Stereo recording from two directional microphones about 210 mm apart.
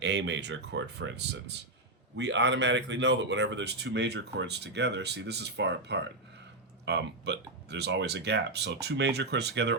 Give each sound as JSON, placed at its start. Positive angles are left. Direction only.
{"t": 0.0, "sound": "speech", "side_deg": -55}